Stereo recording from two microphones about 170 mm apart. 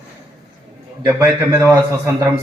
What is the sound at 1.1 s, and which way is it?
Speech, 15° right (ahead or behind).